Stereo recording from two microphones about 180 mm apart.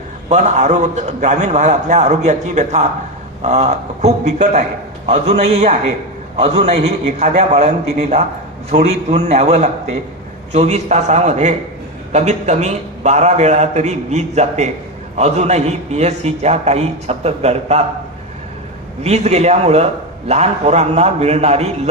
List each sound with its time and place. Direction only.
0.3 s a man's voice: 40° right (ahead or behind)
19.0 s a man's voice: 40° right (ahead or behind)